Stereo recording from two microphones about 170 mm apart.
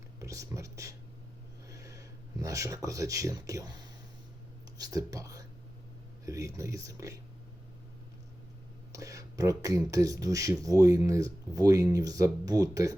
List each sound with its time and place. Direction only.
0.2 s whispering: 20° right (ahead or behind)
1.6 s a sound: 20° right (ahead or behind)
4.8 s speech: 20° right (ahead or behind)
8.9 s speech: 20° right (ahead or behind)